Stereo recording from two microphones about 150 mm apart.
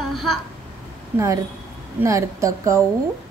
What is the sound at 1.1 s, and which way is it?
A woman's voice, 20° right (ahead or behind).